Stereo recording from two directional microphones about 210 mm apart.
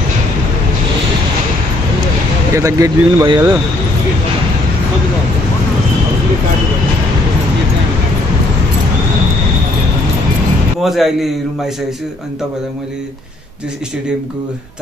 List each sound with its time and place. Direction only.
2.5 s speech: 15° right (ahead or behind)
10.8 s a man's voice: centre (ahead or behind)